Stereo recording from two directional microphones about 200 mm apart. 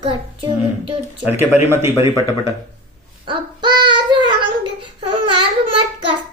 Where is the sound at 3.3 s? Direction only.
25° right (ahead or behind).